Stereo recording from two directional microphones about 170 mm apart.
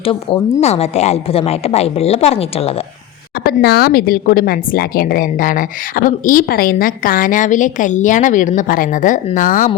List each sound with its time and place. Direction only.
0.0 s a woman's voice: 35° left (ahead or behind)
3.4 s speech: 65° left (ahead or behind)